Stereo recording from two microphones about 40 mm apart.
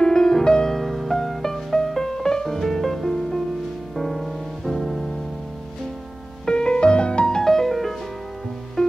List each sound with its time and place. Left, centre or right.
0.0 s music: centre
0.7 s music: centre
6.4 s music: left
7.2 s music: centre
8.8 s music: centre